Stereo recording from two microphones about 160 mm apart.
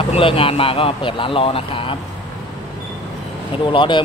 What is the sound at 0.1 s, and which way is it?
Speech, 35° left (ahead or behind).